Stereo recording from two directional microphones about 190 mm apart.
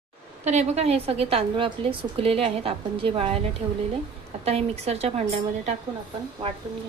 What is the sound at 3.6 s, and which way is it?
Speech, 15° right (ahead or behind).